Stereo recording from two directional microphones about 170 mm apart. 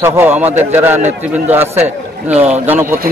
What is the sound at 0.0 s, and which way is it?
Speech, 15° right (ahead or behind).